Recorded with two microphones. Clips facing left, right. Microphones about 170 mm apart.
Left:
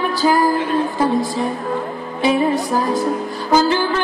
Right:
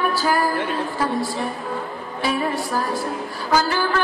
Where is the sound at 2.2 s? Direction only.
20° left (ahead or behind).